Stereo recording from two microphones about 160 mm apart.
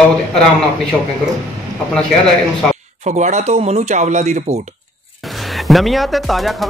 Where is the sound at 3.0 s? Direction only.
50° right (ahead or behind).